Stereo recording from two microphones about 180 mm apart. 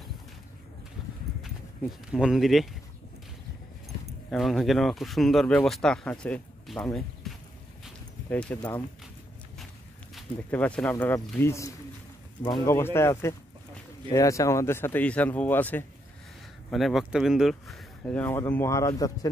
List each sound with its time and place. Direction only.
1.4 s speech: 5° right (ahead or behind)
4.3 s speech: centre (ahead or behind)
10.2 s a sound: centre (ahead or behind)
10.5 s speech: 5° left (ahead or behind)
16.7 s speech: centre (ahead or behind); by 19.1 s 20° left (ahead or behind)